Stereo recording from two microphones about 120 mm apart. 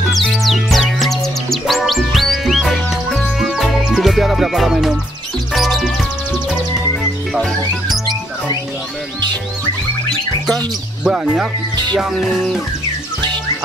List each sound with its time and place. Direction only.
0.1 s music: centre (ahead or behind)
7.0 s music: 5° left (ahead or behind)
11.1 s music: 5° right (ahead or behind)
11.7 s music: 35° right (ahead or behind)
12.0 s music: centre (ahead or behind)